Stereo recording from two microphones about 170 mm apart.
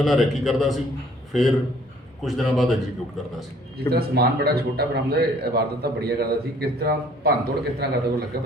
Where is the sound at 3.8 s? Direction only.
65° right (ahead or behind).